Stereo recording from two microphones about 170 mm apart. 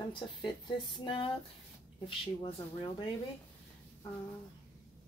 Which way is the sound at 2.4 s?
30° left (ahead or behind).